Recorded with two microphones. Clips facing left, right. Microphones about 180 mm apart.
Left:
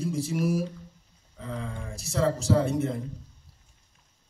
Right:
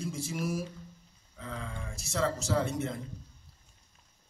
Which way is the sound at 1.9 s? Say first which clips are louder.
Left 5 dB; 35° left (ahead or behind).